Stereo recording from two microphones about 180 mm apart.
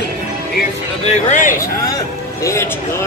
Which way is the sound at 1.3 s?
45° left (ahead or behind).